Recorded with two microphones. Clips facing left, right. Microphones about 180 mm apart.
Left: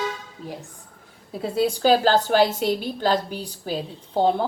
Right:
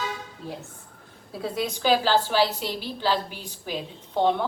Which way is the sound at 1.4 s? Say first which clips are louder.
Left 6 dB; 30° left (ahead or behind).